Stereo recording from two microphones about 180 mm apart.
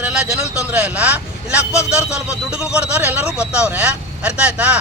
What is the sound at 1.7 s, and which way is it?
Speech, 15° left (ahead or behind).